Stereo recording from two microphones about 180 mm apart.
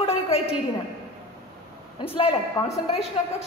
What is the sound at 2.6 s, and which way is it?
Speech, 15° left (ahead or behind).